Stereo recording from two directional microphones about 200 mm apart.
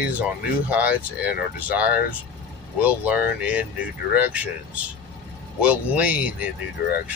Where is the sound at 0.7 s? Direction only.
5° right (ahead or behind).